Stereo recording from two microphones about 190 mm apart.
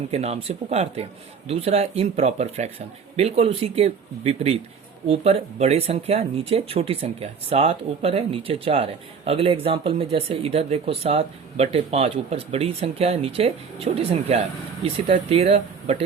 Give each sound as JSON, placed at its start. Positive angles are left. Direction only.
{"t": 0.1, "sound": "speech", "side_deg": -35}